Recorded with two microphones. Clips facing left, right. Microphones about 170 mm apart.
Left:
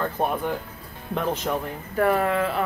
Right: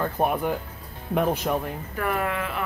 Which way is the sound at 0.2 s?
10° right (ahead or behind).